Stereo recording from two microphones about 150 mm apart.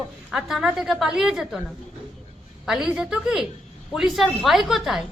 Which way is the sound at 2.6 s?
5° right (ahead or behind).